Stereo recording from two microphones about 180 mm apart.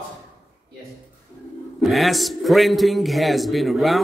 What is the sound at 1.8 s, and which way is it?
A man's voice, centre (ahead or behind).